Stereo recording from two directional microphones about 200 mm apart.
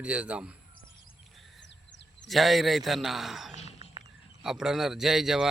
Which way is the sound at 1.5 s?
60° left (ahead or behind).